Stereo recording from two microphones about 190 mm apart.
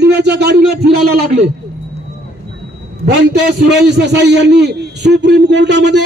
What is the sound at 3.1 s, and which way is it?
A man's voice, 60° right (ahead or behind).